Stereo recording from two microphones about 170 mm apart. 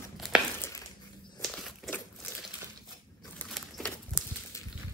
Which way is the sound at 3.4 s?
5° left (ahead or behind).